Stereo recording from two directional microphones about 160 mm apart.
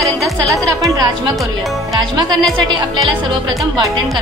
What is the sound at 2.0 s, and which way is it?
Speech, 25° right (ahead or behind).